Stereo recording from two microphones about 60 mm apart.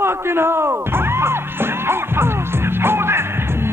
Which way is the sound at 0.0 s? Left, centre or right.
Right.